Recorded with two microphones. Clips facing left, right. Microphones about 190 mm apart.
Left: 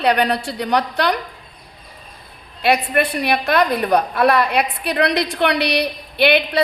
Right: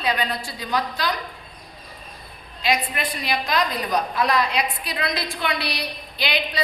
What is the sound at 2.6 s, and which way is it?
A woman's voice, 60° left (ahead or behind).